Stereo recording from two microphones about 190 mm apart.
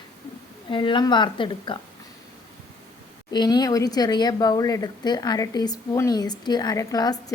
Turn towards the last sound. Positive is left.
turn(degrees=20)  # may be behind; listen again after turning